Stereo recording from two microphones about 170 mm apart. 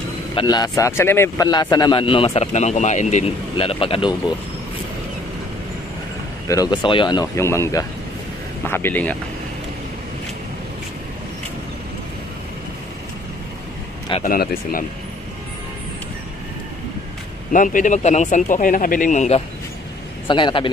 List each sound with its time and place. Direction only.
0.3 s a man's voice: 25° left (ahead or behind)
6.4 s speech: 20° left (ahead or behind)
14.2 s speech: 60° left (ahead or behind)
17.5 s speech: 50° left (ahead or behind)
20.2 s speech: 30° left (ahead or behind)